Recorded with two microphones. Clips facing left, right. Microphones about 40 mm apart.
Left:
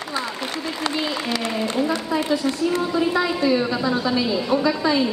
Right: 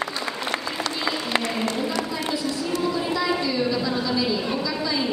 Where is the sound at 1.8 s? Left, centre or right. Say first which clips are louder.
Left 4 dB; left.